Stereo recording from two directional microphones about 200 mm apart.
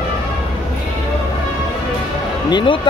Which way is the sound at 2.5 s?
25° left (ahead or behind).